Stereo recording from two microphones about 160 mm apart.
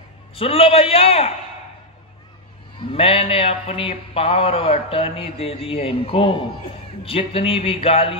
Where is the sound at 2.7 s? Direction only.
35° left (ahead or behind).